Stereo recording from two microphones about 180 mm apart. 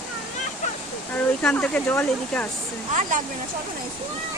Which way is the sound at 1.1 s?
5° left (ahead or behind).